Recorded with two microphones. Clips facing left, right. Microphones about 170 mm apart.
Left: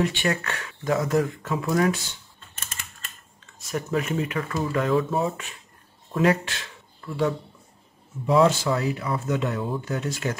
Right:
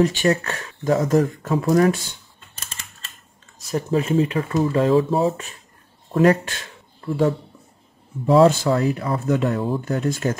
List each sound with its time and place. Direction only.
0.0 s speech: 40° right (ahead or behind)
3.5 s speech: 35° right (ahead or behind)
6.1 s speech: 50° right (ahead or behind)
7.0 s speech: 35° right (ahead or behind)
8.5 s speech: 50° right (ahead or behind)